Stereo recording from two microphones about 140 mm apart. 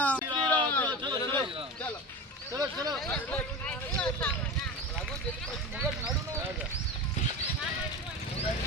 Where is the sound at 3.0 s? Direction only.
10° left (ahead or behind).